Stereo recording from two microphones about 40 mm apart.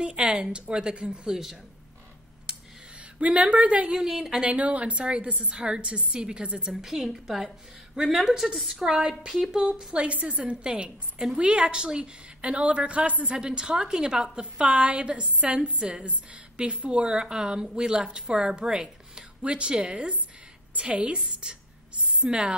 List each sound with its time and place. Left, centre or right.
0.0 s a woman's voice: right
3.2 s speech: right
4.1 s a woman's voice: centre
4.5 s a woman's voice: right
6.7 s a woman's voice: centre
8.5 s a woman's voice: centre
8.8 s a woman's voice: centre
9.9 s a woman's voice: right
16.5 s a woman's voice: right